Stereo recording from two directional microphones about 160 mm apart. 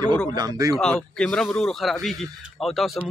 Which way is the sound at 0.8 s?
5° left (ahead or behind).